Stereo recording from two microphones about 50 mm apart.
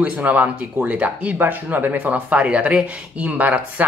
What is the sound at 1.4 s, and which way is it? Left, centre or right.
Speech, right.